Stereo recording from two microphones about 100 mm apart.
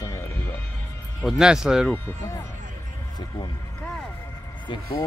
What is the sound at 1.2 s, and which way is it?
Speech, 5° right (ahead or behind).